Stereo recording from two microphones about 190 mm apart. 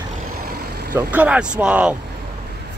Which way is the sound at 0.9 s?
5° right (ahead or behind).